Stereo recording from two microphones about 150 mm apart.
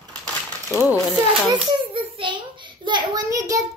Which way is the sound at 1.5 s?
35° right (ahead or behind).